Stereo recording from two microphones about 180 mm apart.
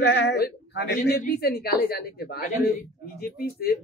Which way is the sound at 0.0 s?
75° left (ahead or behind).